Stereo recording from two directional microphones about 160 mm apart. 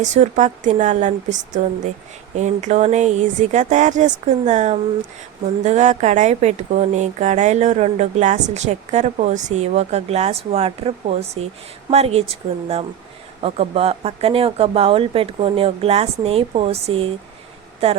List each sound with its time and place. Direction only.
0.0 s a woman's voice: 50° right (ahead or behind)